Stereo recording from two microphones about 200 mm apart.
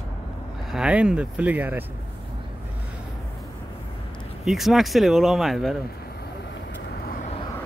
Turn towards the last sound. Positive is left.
turn(degrees=0)  # may be behind; listen again after turning